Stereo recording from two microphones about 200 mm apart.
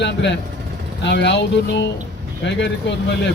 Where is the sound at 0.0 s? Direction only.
60° left (ahead or behind).